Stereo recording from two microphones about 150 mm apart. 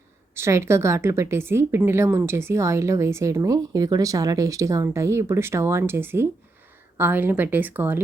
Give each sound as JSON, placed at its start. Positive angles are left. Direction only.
{"t": 0.3, "sound": "a woman's voice", "side_deg": -15}